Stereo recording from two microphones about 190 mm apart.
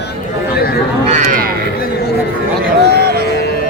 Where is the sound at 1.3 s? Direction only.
50° right (ahead or behind).